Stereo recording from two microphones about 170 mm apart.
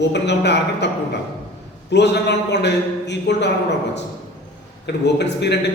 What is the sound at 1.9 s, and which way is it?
Speech, 90° left.